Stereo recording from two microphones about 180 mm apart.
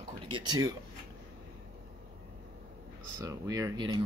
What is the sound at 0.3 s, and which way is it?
Speech, 25° right (ahead or behind).